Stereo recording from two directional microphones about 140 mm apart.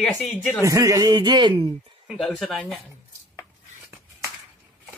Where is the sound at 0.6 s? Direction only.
25° right (ahead or behind).